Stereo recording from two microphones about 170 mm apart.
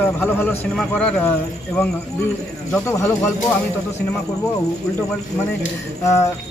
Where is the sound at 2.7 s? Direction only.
15° left (ahead or behind).